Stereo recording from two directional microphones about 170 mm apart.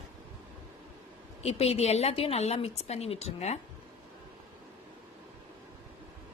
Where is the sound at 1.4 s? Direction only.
35° left (ahead or behind).